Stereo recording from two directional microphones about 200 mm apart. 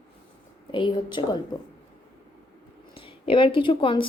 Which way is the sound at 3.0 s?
25° left (ahead or behind).